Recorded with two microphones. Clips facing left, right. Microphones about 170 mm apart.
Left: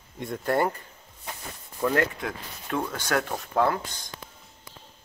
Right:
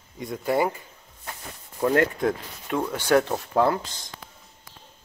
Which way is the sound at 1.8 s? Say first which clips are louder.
Right 4 dB; 25° right (ahead or behind).